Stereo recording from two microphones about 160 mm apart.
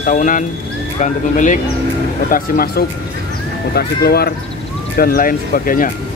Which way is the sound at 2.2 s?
65° left (ahead or behind).